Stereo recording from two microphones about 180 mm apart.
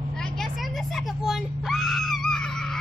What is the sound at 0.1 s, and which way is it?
Screaming, centre (ahead or behind).